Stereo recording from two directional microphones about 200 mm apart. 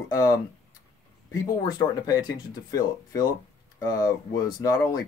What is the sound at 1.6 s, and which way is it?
Speech, 20° left (ahead or behind).